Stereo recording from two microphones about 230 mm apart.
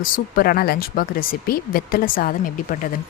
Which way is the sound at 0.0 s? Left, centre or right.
Left.